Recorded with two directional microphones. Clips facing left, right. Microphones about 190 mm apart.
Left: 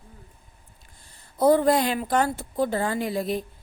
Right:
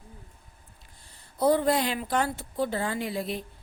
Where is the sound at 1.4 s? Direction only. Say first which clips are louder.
Left 4 dB; 50° left (ahead or behind).